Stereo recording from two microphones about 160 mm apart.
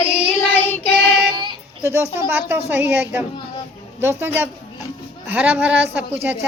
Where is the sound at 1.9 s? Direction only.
15° right (ahead or behind).